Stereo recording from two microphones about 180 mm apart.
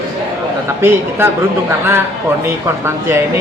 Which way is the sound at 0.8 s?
10° right (ahead or behind).